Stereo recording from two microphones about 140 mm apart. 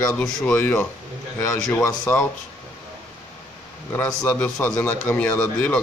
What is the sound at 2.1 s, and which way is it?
Speech, 15° left (ahead or behind).